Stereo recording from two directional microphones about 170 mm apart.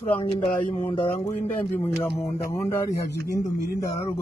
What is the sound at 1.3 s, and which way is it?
A man's voice, 10° left (ahead or behind).